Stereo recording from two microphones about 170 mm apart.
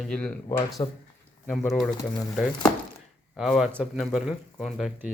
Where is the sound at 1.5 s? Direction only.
Centre (ahead or behind).